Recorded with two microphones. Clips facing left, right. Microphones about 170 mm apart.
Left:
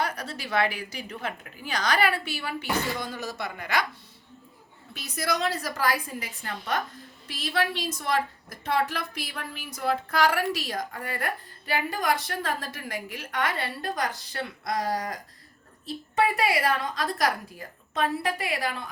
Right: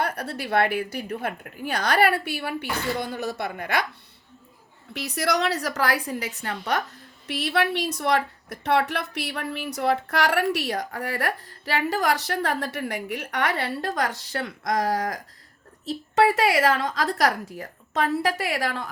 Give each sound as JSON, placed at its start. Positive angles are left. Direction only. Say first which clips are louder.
{"t": 0.0, "sound": "a woman's voice", "louder": "right 3 dB", "side_deg": -60}
{"t": 4.9, "sound": "a woman's voice", "louder": "right 4 dB", "side_deg": -65}